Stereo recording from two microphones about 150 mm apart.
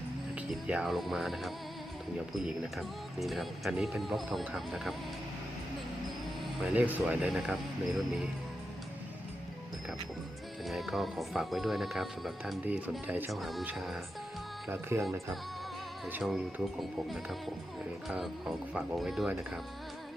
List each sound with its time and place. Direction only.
0.3 s speech: 5° right (ahead or behind)
6.6 s speech: 5° right (ahead or behind)
10.7 s speech: centre (ahead or behind)
14.7 s speech: 15° right (ahead or behind)
16.2 s speech: 5° right (ahead or behind)